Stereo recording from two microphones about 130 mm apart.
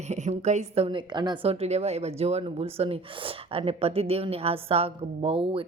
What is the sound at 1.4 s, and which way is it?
Speech, 50° right (ahead or behind).